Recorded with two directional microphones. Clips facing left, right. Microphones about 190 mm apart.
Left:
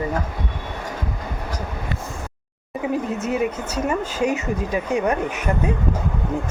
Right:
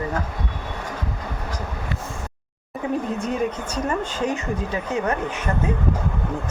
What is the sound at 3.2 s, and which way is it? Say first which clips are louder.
Speech: left 2 dB; 5° left (ahead or behind).